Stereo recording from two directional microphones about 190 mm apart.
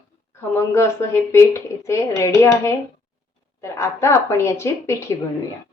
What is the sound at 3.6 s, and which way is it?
A woman's voice, 15° left (ahead or behind).